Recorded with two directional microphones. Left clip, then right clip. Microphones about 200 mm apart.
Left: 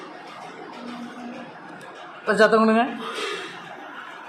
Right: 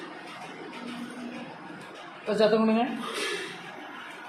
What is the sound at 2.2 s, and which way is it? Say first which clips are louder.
Speech: left 6 dB; 20° left (ahead or behind).